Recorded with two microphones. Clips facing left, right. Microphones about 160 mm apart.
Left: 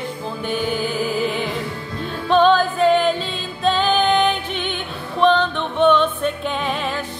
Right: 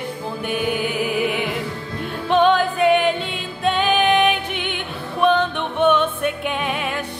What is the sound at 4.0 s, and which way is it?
Music, 65° right (ahead or behind).